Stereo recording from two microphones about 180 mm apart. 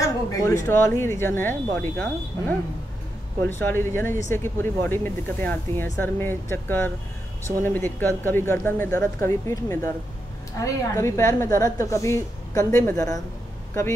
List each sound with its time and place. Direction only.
0.0 s speech: 15° left (ahead or behind)